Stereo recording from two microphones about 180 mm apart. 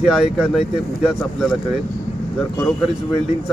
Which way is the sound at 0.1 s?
5° right (ahead or behind).